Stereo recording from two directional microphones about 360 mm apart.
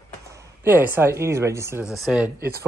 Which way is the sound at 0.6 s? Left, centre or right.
Centre.